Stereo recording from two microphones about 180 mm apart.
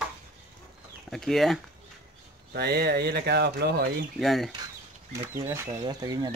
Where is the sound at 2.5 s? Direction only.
60° right (ahead or behind).